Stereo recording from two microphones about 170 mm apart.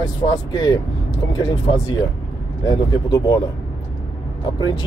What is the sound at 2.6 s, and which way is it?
Speech, 25° left (ahead or behind).